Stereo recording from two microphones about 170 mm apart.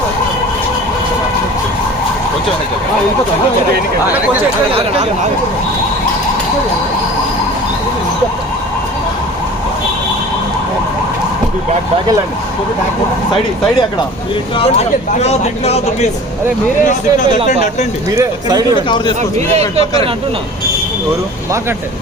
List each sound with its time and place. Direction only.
4.7 s speech: 35° right (ahead or behind)
14.6 s speech: 40° left (ahead or behind)
16.8 s speech: 50° left (ahead or behind)
18.2 s speech: 20° right (ahead or behind)